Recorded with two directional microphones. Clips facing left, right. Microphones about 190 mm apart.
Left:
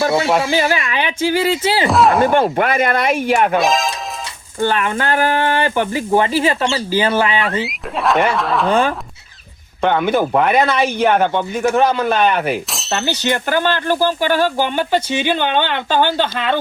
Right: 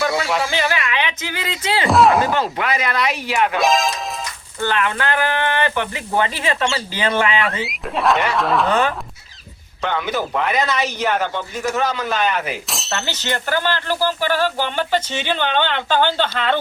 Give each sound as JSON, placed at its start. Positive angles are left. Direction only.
{"t": 0.0, "sound": "speech", "side_deg": 25}
{"t": 1.9, "sound": "speech", "side_deg": 0}
{"t": 2.3, "sound": "speech", "side_deg": 55}
{"t": 3.6, "sound": "speech", "side_deg": 0}
{"t": 4.6, "sound": "speech", "side_deg": 30}
{"t": 4.9, "sound": "speech", "side_deg": 40}
{"t": 7.4, "sound": "speech", "side_deg": 0}
{"t": 9.8, "sound": "speech", "side_deg": 55}
{"t": 13.0, "sound": "speech", "side_deg": 15}
{"t": 13.6, "sound": "speech", "side_deg": 50}
{"t": 14.0, "sound": "speech", "side_deg": 15}